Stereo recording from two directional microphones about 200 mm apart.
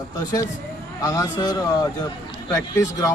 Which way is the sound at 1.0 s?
20° left (ahead or behind).